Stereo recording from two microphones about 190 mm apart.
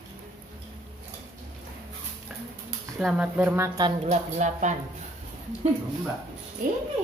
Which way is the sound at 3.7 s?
30° right (ahead or behind).